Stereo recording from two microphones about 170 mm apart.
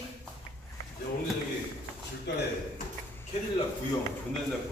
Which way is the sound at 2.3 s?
90° left.